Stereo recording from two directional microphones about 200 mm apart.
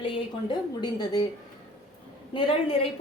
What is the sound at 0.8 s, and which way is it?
Speech, 20° left (ahead or behind).